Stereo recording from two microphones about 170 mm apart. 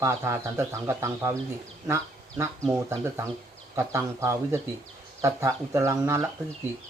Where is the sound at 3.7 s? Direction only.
15° right (ahead or behind).